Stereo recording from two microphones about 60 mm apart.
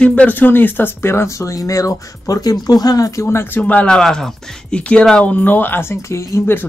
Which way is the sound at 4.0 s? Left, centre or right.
Centre.